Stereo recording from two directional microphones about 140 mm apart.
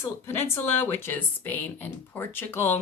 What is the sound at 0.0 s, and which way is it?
Speech, 15° left (ahead or behind).